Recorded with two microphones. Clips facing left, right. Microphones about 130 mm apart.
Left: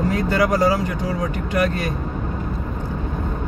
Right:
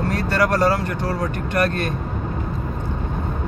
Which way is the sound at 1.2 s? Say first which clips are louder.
Even; 10° left (ahead or behind).